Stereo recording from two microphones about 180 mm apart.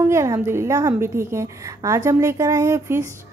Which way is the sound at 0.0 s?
15° right (ahead or behind).